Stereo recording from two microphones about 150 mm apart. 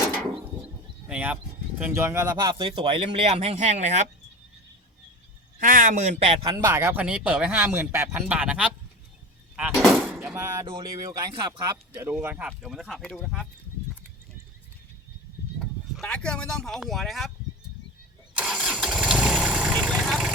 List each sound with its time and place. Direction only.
1.0 s a sound: 5° right (ahead or behind)
1.8 s speech: 15° right (ahead or behind); by 4.0 s 50° right (ahead or behind)
5.5 s speech: 65° right (ahead or behind)
6.7 s speech: 15° right (ahead or behind)
9.6 s a sound: 5° right (ahead or behind)
10.3 s speech: 20° right (ahead or behind)
11.6 s speech: 15° right (ahead or behind); by 13.5 s centre (ahead or behind)
15.5 s speech: 5° left (ahead or behind)
18.5 s engine starting: 5° right (ahead or behind)